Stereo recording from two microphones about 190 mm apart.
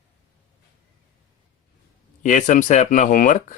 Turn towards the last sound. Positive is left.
turn(degrees=45)  # may be behind; listen again after turning